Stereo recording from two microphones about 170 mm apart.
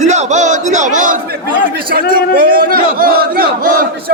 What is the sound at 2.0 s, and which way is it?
Speech, 65° left (ahead or behind).